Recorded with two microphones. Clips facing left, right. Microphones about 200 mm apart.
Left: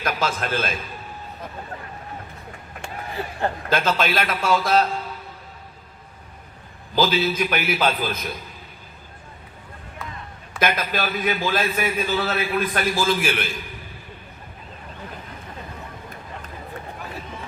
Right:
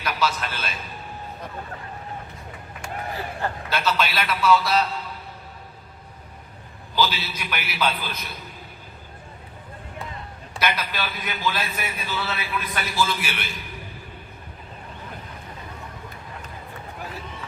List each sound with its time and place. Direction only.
0.0 s a man's voice: 50° left (ahead or behind)
3.7 s a man's voice: 50° left (ahead or behind)
6.9 s a man's voice: 45° left (ahead or behind)
10.6 s a man's voice: 50° left (ahead or behind)